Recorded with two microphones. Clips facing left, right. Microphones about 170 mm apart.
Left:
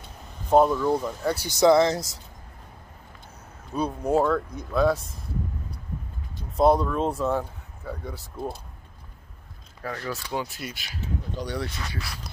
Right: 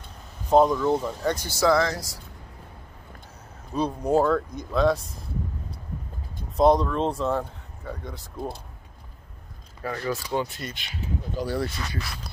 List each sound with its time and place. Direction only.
0.5 s speech: 5° left (ahead or behind)
1.5 s speech: 20° left (ahead or behind)
3.7 s speech: centre (ahead or behind)
6.5 s speech: 5° left (ahead or behind)
9.8 s speech: 5° right (ahead or behind)
10.3 s speech: 10° left (ahead or behind)